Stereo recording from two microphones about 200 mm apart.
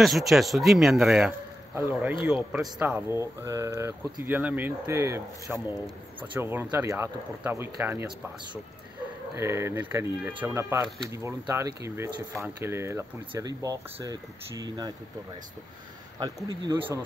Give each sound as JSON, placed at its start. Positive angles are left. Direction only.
{"t": 0.0, "sound": "speech", "side_deg": 0}
{"t": 9.3, "sound": "speech", "side_deg": -15}
{"t": 16.2, "sound": "speech", "side_deg": -15}